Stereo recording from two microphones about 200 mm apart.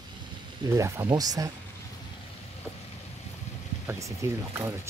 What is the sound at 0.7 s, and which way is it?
Speech, 15° right (ahead or behind).